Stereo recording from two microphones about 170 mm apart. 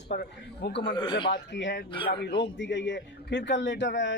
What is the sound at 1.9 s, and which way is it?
Speech, 30° left (ahead or behind).